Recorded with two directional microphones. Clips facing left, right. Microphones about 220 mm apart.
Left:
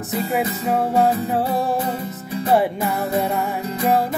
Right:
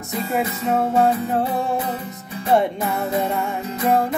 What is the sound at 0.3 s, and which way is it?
Music, centre (ahead or behind).